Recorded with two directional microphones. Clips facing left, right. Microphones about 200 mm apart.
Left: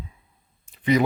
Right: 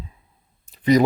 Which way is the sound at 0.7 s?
40° right (ahead or behind).